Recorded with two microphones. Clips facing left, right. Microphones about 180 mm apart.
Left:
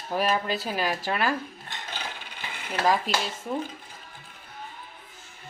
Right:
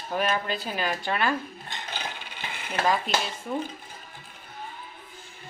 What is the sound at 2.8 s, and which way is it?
Speech, centre (ahead or behind).